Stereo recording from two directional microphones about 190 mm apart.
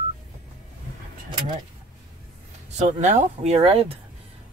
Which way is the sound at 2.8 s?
40° right (ahead or behind).